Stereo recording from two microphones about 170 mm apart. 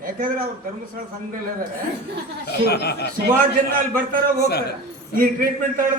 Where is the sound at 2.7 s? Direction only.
75° left (ahead or behind).